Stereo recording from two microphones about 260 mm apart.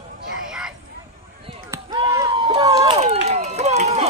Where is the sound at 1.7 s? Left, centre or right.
Centre.